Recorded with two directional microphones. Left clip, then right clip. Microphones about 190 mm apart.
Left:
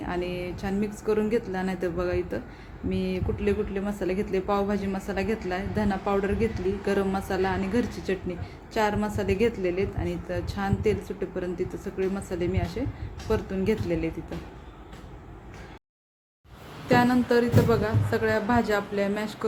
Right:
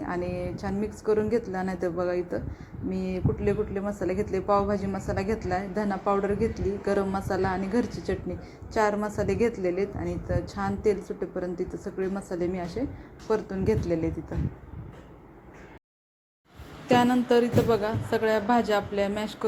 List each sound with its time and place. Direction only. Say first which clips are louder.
0.0 s a woman's voice: even; 5° right (ahead or behind)
16.9 s a woman's voice: even; 10° right (ahead or behind)